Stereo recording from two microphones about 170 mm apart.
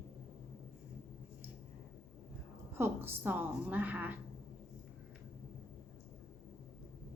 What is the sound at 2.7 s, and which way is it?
A woman's voice, 15° right (ahead or behind).